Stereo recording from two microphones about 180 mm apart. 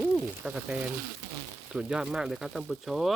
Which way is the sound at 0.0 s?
5° right (ahead or behind).